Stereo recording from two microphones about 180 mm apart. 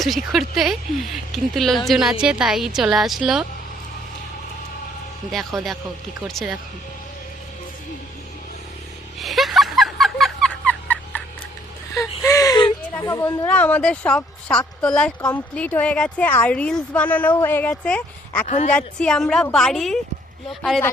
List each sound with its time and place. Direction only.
0.0 s a woman's voice: centre (ahead or behind)
5.3 s a woman's voice: centre (ahead or behind)
9.1 s a sound: centre (ahead or behind)
12.2 s gasp: 20° left (ahead or behind)
14.8 s a woman's voice: 5° left (ahead or behind)
18.4 s a woman's voice: 40° left (ahead or behind)
18.7 s a woman's voice: 5° left (ahead or behind)